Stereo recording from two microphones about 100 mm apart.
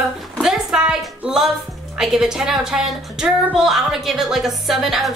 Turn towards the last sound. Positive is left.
turn(degrees=0)  # may be behind; listen again after turning